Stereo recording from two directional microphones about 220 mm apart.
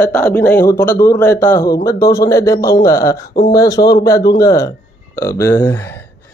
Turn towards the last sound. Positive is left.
turn(degrees=10)  # may be behind; listen again after turning